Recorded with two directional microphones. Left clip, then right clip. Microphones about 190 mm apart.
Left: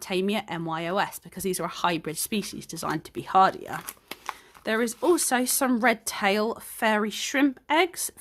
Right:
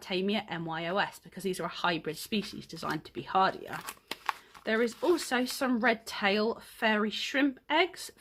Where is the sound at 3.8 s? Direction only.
5° left (ahead or behind).